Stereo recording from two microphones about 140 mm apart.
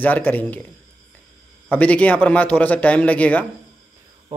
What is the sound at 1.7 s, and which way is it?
Speech, 10° left (ahead or behind).